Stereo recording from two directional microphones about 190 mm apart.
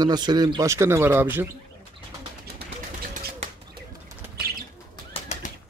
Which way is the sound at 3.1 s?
40° right (ahead or behind).